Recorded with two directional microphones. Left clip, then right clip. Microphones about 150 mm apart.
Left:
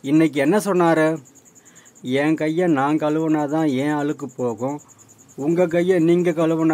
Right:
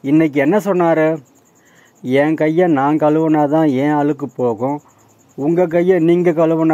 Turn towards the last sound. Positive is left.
turn(degrees=-20)  # may be behind; listen again after turning